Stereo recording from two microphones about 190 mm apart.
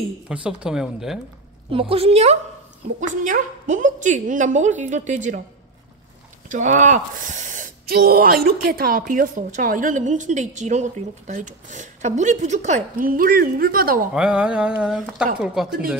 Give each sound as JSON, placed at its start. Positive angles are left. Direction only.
{"t": 0.3, "sound": "speech", "side_deg": -5}
{"t": 1.7, "sound": "a woman's voice", "side_deg": -30}
{"t": 6.5, "sound": "speech", "side_deg": -40}
{"t": 14.1, "sound": "speech", "side_deg": -5}